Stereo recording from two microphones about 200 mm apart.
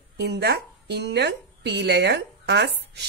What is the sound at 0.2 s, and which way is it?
A woman's voice, 55° right (ahead or behind).